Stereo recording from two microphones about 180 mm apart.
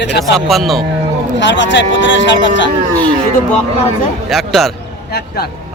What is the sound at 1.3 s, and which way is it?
Speech, 85° left.